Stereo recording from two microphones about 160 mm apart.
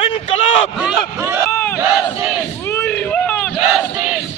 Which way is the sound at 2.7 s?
5° left (ahead or behind).